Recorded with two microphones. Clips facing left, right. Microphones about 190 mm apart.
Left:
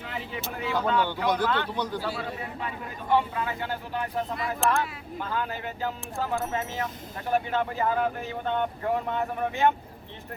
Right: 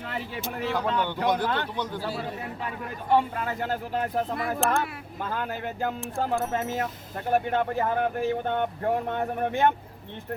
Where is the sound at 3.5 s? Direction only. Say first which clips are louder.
Right 3 dB; 45° right (ahead or behind).